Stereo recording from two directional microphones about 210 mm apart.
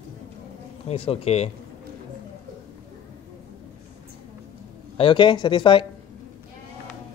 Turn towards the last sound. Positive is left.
turn(degrees=20)  # may be behind; listen again after turning